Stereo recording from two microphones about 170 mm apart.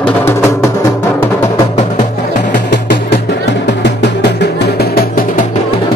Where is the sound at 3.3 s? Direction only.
90° left.